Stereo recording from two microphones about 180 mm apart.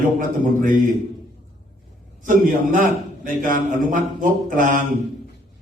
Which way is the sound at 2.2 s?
45° right (ahead or behind).